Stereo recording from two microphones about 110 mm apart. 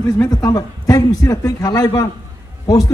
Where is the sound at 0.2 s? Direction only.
35° left (ahead or behind).